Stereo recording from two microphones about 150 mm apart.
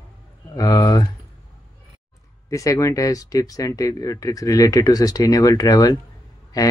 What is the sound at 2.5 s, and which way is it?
Speech, 20° left (ahead or behind).